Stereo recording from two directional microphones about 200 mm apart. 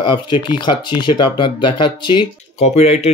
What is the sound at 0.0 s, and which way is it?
Speech, 25° left (ahead or behind).